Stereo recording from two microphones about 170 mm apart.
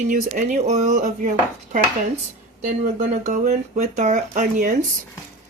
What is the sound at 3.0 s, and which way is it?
Speech, 45° right (ahead or behind).